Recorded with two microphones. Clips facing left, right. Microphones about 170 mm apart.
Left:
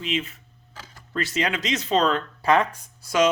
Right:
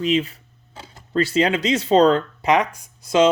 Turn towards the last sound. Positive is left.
turn(degrees=-15)  # may be behind; listen again after turning